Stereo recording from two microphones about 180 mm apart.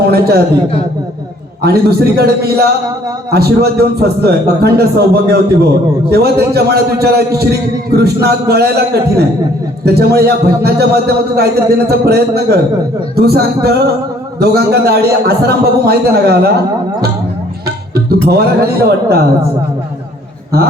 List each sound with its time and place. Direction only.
0.1 s a sound: 60° right (ahead or behind)
1.6 s a man's voice: 60° right (ahead or behind)
17.7 s music: 60° right (ahead or behind)
20.5 s a man's voice: 60° right (ahead or behind)